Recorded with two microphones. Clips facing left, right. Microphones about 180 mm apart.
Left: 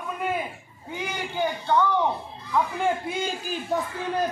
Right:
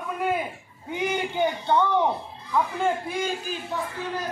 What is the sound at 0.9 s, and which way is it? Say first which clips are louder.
Speech: right 4 dB; 20° right (ahead or behind).